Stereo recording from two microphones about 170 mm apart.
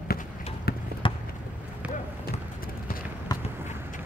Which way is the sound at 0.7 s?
65° left (ahead or behind).